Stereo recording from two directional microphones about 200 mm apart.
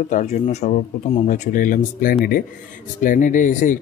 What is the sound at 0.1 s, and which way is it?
Speech, 35° left (ahead or behind).